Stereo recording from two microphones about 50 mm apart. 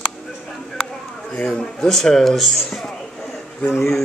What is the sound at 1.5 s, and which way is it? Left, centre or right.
Speech, centre.